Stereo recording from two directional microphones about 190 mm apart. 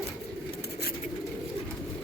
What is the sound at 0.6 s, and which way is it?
Bird, 55° left (ahead or behind).